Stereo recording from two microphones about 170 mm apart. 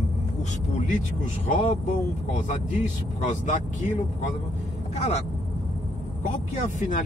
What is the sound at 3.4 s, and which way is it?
Speech, 45° left (ahead or behind).